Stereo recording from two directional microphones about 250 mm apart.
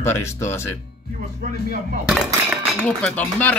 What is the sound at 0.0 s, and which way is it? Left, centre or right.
Speech, centre.